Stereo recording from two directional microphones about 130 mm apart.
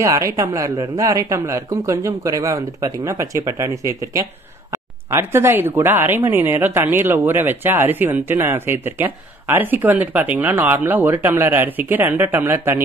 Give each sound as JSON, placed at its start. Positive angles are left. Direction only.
{"t": 0.0, "sound": "speech", "side_deg": -25}